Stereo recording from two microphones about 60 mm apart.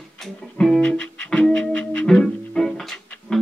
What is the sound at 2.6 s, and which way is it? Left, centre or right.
Music, centre.